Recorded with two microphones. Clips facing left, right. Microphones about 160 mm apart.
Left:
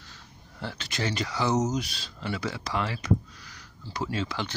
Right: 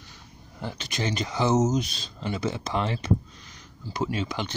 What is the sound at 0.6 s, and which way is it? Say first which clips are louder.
Speech: right 1 dB; 15° right (ahead or behind).